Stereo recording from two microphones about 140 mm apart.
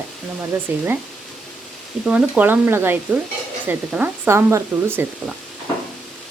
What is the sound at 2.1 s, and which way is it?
Speech, 10° right (ahead or behind).